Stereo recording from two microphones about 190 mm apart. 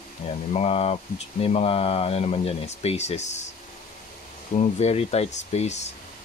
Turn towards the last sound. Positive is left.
turn(degrees=35)  # may be behind; listen again after turning